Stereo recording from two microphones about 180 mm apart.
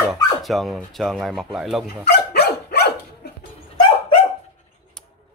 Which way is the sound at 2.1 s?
65° left (ahead or behind).